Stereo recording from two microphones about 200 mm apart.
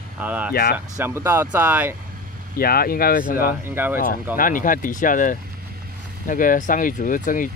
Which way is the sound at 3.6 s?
10° right (ahead or behind).